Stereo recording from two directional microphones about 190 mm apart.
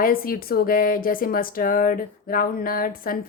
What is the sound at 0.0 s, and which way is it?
A woman's voice, 50° left (ahead or behind).